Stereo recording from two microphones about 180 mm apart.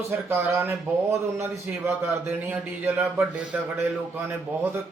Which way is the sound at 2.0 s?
10° right (ahead or behind).